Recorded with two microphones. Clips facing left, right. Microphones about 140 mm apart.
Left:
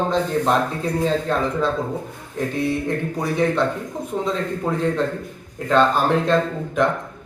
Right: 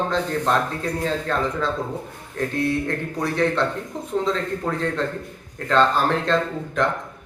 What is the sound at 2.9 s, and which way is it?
Speech, 15° left (ahead or behind).